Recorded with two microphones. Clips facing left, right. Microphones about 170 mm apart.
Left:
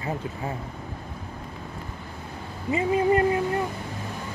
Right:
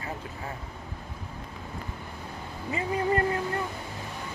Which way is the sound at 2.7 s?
20° left (ahead or behind).